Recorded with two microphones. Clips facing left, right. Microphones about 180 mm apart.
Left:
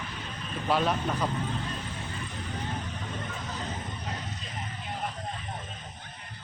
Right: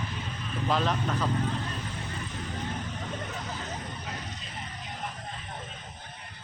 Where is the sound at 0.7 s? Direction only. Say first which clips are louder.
Left 2 dB; 10° left (ahead or behind).